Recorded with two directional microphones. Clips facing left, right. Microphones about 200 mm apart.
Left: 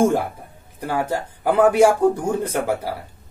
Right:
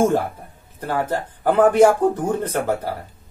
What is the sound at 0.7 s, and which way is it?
Speech, 10° left (ahead or behind).